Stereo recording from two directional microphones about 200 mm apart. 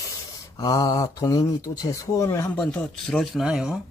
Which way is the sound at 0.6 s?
20° left (ahead or behind).